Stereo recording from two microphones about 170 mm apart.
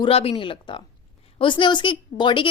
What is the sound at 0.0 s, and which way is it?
A woman's voice, 35° left (ahead or behind).